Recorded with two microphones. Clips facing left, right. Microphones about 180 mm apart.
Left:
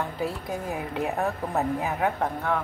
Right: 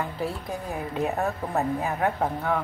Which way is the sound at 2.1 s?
5° right (ahead or behind).